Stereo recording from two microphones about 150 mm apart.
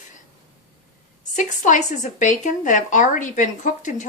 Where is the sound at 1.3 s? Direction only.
55° left (ahead or behind).